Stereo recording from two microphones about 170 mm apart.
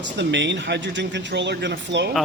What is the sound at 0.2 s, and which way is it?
Speech, 90° right.